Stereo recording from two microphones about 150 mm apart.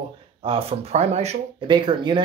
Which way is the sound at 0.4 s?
40° right (ahead or behind).